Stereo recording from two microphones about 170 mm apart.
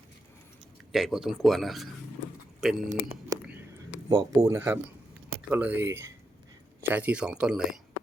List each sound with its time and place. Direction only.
0.9 s speech: centre (ahead or behind)
2.9 s speech: 35° right (ahead or behind)
4.1 s speech: 20° right (ahead or behind)